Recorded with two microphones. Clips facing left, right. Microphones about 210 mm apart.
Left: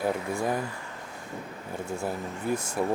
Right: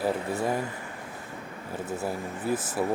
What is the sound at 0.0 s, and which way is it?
Speech, 5° right (ahead or behind).